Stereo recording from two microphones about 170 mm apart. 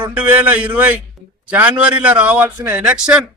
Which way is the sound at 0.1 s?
10° right (ahead or behind).